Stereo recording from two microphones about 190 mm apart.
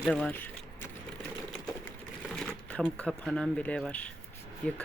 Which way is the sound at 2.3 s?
5° left (ahead or behind).